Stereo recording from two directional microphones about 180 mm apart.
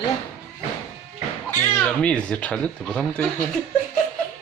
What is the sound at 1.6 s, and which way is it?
Speech, 10° left (ahead or behind).